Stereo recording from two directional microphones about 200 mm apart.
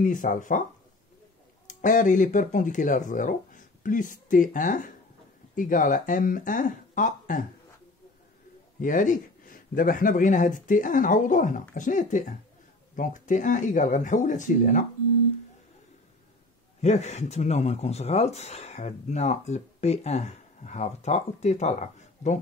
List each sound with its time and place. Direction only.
0.0 s speech: 40° left (ahead or behind)
1.7 s speech: 40° left (ahead or behind)
8.8 s speech: 40° left (ahead or behind)
16.8 s speech: 35° left (ahead or behind)